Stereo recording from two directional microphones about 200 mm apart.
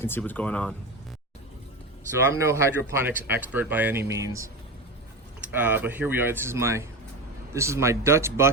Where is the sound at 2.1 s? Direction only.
15° right (ahead or behind).